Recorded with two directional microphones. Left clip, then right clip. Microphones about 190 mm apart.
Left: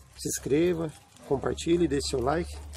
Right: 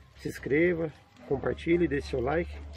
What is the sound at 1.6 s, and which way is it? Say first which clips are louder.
Speech: even; 20° left (ahead or behind).